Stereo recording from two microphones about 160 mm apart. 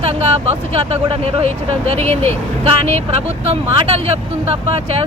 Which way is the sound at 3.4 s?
40° right (ahead or behind).